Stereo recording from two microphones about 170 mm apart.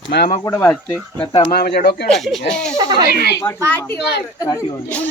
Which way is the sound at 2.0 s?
Centre (ahead or behind).